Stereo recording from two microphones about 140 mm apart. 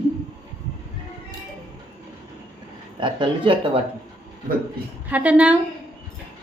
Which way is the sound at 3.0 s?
40° right (ahead or behind).